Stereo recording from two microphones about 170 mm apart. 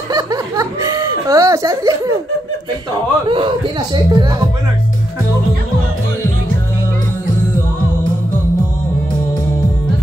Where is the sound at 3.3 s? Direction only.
30° right (ahead or behind).